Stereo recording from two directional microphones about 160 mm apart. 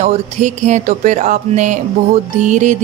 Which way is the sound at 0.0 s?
45° right (ahead or behind).